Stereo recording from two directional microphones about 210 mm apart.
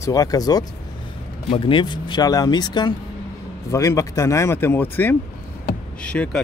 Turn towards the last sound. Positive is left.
turn(degrees=5)  # may be behind; listen again after turning